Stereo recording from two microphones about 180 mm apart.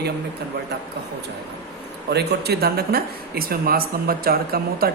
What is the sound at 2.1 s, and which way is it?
Speech, 65° right (ahead or behind).